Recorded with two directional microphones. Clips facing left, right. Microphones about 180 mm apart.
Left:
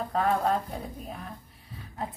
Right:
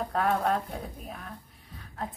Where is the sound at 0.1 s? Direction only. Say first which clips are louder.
Left 2 dB; centre (ahead or behind).